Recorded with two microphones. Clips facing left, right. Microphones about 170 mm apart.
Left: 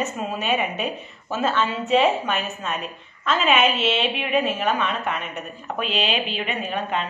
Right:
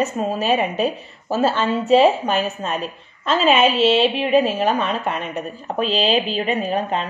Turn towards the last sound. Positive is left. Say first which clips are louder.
# right 5 dB
turn(degrees=-35)  # may be behind; listen again after turning